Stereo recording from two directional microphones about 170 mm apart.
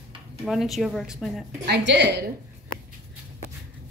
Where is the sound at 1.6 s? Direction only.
85° right.